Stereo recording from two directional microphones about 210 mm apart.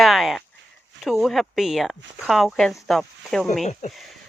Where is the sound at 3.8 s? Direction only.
35° left (ahead or behind).